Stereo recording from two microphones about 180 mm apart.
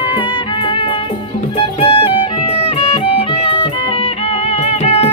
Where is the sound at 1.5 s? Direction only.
30° left (ahead or behind).